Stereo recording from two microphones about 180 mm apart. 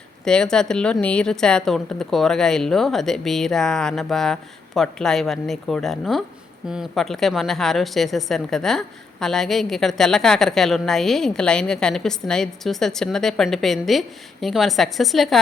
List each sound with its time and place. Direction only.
0.3 s speech: 5° left (ahead or behind)